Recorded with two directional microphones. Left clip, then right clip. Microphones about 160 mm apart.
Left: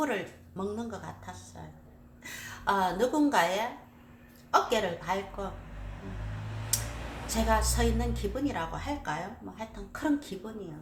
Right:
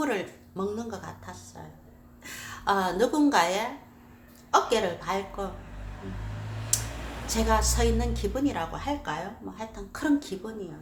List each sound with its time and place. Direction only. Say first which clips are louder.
0.0 s a woman's voice: right 2 dB; 20° right (ahead or behind)
7.3 s a woman's voice: right 3 dB; 20° right (ahead or behind)